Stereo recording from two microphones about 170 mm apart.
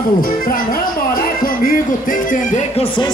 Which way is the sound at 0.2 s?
55° left (ahead or behind).